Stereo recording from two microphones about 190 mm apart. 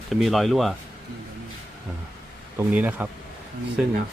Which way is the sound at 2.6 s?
10° right (ahead or behind).